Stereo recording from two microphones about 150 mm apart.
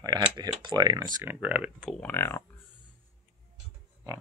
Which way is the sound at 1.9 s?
10° left (ahead or behind).